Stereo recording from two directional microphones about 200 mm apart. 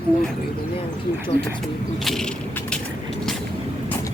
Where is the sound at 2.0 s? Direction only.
Centre (ahead or behind).